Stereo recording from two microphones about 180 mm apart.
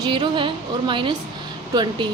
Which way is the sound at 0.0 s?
25° right (ahead or behind).